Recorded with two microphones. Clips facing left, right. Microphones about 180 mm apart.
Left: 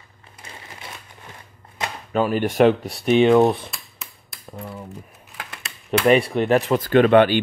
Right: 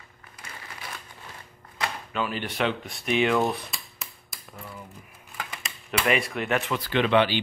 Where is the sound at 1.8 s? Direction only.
25° left (ahead or behind).